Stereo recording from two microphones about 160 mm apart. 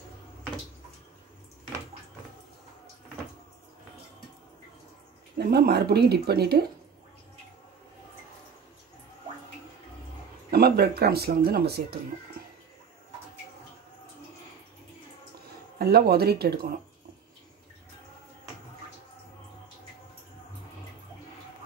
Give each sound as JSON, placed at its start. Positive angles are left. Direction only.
{"t": 5.4, "sound": "speech", "side_deg": -85}
{"t": 10.5, "sound": "speech", "side_deg": -80}
{"t": 15.8, "sound": "speech", "side_deg": -80}